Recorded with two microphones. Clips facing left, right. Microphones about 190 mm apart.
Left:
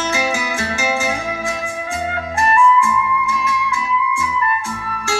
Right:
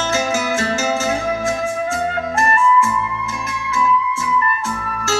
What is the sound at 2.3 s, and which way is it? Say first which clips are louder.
Music: left 2 dB; 50° right (ahead or behind).